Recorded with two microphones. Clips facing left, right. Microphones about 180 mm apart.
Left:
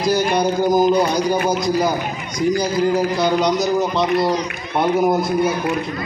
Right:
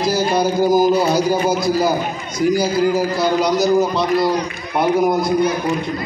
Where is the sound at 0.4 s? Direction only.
5° right (ahead or behind).